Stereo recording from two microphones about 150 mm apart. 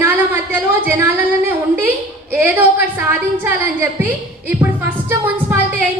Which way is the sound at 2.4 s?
15° right (ahead or behind).